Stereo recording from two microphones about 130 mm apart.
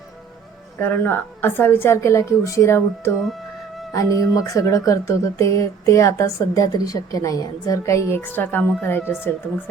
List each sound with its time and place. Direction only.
0.8 s speech: 15° left (ahead or behind)